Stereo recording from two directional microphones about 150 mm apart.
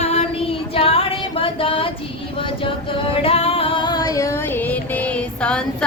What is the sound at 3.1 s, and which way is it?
Music, 40° left (ahead or behind).